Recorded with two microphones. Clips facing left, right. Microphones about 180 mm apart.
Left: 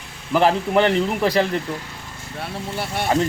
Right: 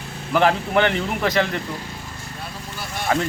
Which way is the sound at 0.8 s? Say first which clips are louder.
Left 3 dB; 35° left (ahead or behind).